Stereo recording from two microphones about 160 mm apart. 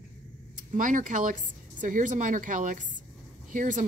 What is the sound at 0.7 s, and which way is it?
A woman's voice, 50° right (ahead or behind).